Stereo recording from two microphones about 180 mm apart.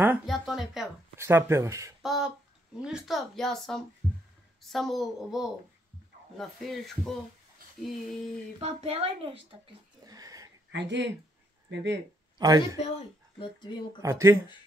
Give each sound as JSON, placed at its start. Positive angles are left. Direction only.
{"t": 0.0, "sound": "a sound", "side_deg": -5}
{"t": 1.1, "sound": "speech", "side_deg": -15}
{"t": 2.0, "sound": "a sound", "side_deg": 0}
{"t": 2.8, "sound": "speech", "side_deg": -5}
{"t": 8.5, "sound": "speech", "side_deg": -35}
{"t": 10.7, "sound": "speech", "side_deg": -80}
{"t": 12.4, "sound": "speech", "side_deg": -20}
{"t": 13.4, "sound": "speech", "side_deg": 25}
{"t": 14.0, "sound": "speech", "side_deg": -15}